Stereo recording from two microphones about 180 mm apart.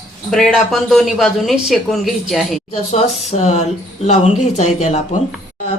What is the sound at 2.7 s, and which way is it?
Speech, 40° left (ahead or behind).